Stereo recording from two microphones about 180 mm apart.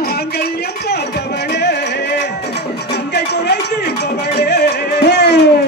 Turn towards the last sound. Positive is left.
turn(degrees=65)  # may be behind; listen again after turning